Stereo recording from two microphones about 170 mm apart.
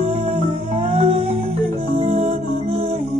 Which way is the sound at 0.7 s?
35° right (ahead or behind).